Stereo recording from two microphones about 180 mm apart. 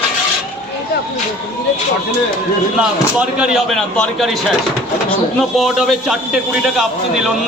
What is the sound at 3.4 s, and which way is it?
Speech, 5° right (ahead or behind).